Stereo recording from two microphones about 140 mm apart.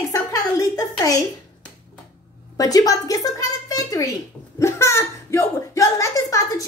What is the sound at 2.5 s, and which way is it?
Speech, 25° left (ahead or behind).